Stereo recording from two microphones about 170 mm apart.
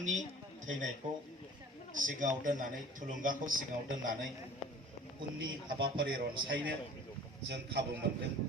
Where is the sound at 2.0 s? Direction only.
50° right (ahead or behind).